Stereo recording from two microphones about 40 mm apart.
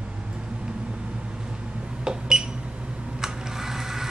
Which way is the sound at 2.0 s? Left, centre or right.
Centre.